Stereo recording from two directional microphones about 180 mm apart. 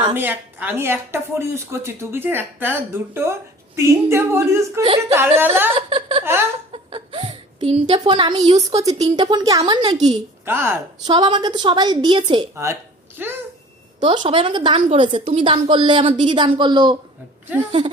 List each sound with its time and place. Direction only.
0.1 s speech: 10° right (ahead or behind)
4.8 s a woman's voice: 30° right (ahead or behind)
6.2 s speech: 15° right (ahead or behind)
6.7 s a woman's voice: 30° right (ahead or behind)
10.4 s speech: 15° right (ahead or behind)
11.1 s a woman's voice: 25° right (ahead or behind)
13.2 s speech: 10° right (ahead or behind)
14.0 s a woman's voice: 25° right (ahead or behind)